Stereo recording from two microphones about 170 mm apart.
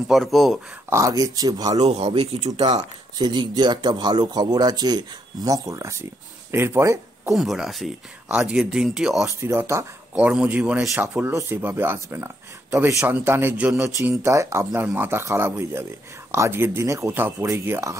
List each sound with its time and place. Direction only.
0.1 s speech: centre (ahead or behind)
0.8 s a man's voice: 20° right (ahead or behind)
1.9 s speech: 40° right (ahead or behind)
2.8 s a man's voice: 25° right (ahead or behind)
7.3 s speech: centre (ahead or behind)
9.4 s speech: 15° right (ahead or behind)